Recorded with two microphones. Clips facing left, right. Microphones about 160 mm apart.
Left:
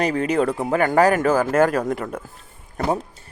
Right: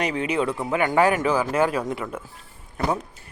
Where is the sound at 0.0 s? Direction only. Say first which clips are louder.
Left 4 dB; 40° left (ahead or behind).